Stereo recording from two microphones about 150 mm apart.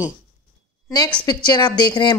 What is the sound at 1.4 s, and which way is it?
Speech, 30° left (ahead or behind).